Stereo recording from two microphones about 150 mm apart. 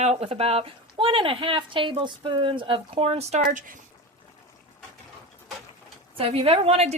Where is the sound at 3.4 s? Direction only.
60° right (ahead or behind).